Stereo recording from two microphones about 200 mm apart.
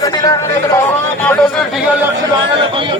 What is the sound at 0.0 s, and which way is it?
A man's voice, 15° left (ahead or behind).